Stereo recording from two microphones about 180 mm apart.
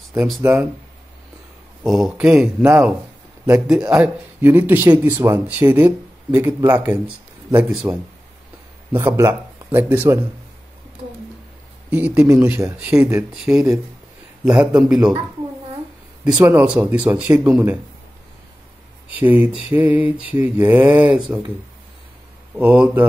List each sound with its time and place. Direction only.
0.4 s speech: 10° right (ahead or behind)
1.8 s a man's voice: centre (ahead or behind)
11.9 s a man's voice: 10° right (ahead or behind)
16.3 s speech: 10° right (ahead or behind)
19.1 s speech: 10° right (ahead or behind)
22.6 s speech: 10° right (ahead or behind)